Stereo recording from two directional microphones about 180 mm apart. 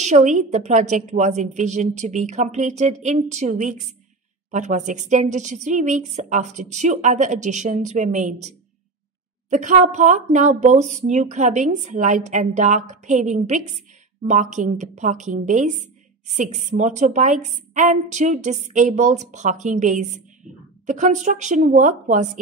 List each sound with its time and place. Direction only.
0.0 s a woman's voice: 40° right (ahead or behind)
9.5 s a woman's voice: 45° right (ahead or behind)